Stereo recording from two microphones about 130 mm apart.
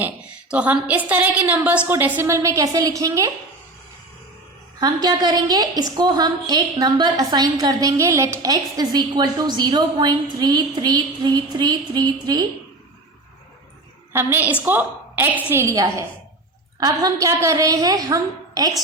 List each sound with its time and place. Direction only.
0.5 s a woman's voice: 10° right (ahead or behind); by 3.2 s 25° right (ahead or behind)
4.8 s a woman's voice: 30° right (ahead or behind)
14.1 s a woman's voice: 15° right (ahead or behind)